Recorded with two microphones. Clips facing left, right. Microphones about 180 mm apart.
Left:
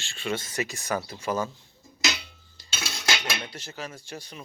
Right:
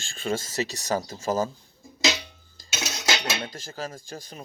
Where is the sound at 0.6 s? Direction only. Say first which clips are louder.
Right 2 dB; 35° right (ahead or behind).